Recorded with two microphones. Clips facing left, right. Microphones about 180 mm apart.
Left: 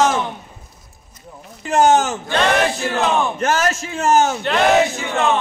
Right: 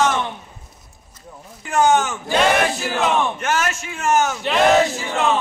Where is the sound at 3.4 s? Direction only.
35° left (ahead or behind).